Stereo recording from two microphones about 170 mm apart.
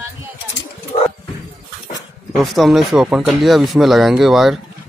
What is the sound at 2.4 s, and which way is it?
Speech, centre (ahead or behind).